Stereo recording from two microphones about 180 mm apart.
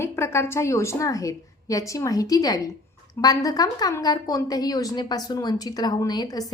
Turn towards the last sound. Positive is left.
turn(degrees=20)  # may be behind; listen again after turning